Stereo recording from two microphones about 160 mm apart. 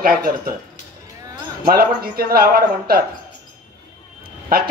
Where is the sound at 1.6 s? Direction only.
65° right (ahead or behind).